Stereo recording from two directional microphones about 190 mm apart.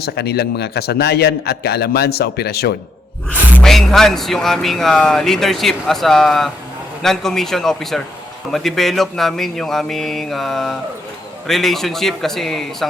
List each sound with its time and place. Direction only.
0.0 s a man's voice: 55° left (ahead or behind)
3.2 s speech: centre (ahead or behind)